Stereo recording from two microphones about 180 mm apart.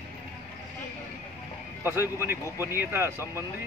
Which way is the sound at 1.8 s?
15° right (ahead or behind).